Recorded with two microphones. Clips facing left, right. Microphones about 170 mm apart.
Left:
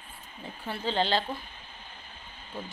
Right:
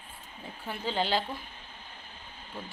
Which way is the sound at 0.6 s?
10° right (ahead or behind).